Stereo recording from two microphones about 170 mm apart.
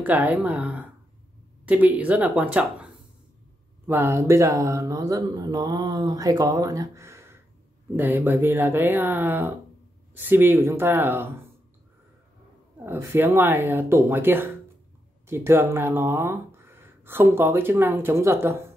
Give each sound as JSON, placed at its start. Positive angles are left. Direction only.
{"t": 0.0, "sound": "speech", "side_deg": -10}
{"t": 12.7, "sound": "speech", "side_deg": -15}